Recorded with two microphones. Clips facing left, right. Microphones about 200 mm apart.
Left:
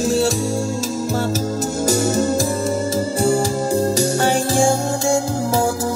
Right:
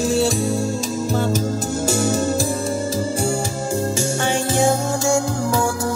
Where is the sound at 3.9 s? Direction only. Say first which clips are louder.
Left 4 dB; 40° left (ahead or behind).